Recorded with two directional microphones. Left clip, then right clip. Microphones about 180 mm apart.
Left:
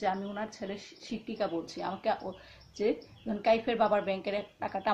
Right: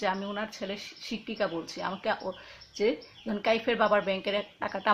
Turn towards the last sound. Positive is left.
turn(degrees=-45)  # may be behind; listen again after turning